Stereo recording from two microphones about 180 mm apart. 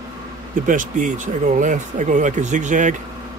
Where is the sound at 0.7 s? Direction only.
45° right (ahead or behind).